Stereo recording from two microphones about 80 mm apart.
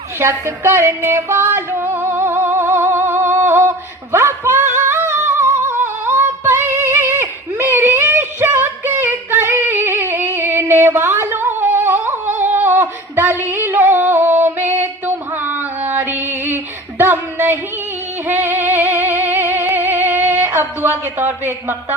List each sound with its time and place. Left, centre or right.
0.2 s music: right
17.0 s a sound: right
18.3 s music: right
21.0 s speech: right